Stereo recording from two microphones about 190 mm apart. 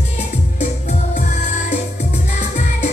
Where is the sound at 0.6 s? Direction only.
35° left (ahead or behind).